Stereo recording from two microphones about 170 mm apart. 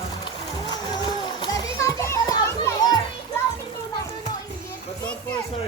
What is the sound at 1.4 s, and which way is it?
Children playing, 20° left (ahead or behind).